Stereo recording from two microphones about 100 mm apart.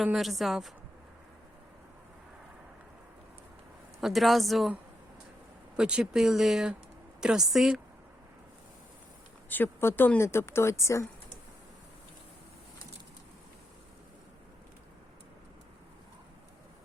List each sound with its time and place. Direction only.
0.0 s speech: centre (ahead or behind)
4.0 s speech: centre (ahead or behind)
5.7 s speech: 10° right (ahead or behind)
9.5 s speech: 20° left (ahead or behind)